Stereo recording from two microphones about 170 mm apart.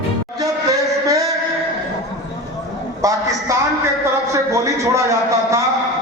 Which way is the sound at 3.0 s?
20° right (ahead or behind).